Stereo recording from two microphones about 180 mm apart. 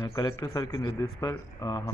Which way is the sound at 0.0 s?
20° left (ahead or behind).